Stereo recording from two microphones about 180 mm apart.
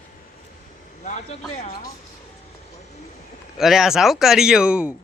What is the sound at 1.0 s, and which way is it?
Speech, 40° left (ahead or behind).